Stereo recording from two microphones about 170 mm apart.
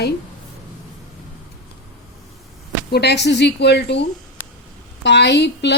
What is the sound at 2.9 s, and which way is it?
A woman's voice, 80° left.